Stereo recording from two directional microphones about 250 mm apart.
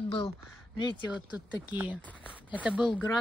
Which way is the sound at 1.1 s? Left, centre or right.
Centre.